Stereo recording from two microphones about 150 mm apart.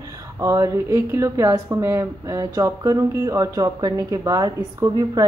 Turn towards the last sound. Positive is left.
turn(degrees=-25)  # may be behind; listen again after turning